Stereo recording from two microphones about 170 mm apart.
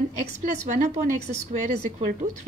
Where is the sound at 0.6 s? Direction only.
45° right (ahead or behind).